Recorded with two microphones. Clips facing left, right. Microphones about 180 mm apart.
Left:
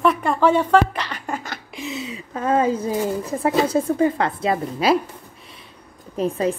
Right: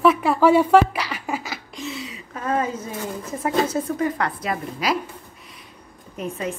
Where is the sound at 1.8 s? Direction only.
20° left (ahead or behind).